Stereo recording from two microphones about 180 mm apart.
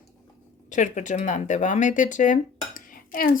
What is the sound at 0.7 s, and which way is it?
Speech, 45° left (ahead or behind).